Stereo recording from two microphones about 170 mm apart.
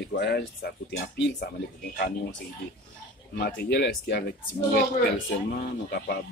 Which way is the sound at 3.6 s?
80° left.